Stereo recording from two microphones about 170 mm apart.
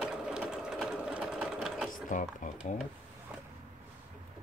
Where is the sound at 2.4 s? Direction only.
50° left (ahead or behind).